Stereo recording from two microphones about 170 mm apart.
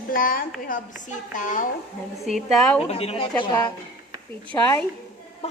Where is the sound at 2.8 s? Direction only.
35° left (ahead or behind).